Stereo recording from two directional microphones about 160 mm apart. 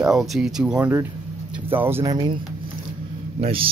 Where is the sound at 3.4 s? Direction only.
35° right (ahead or behind).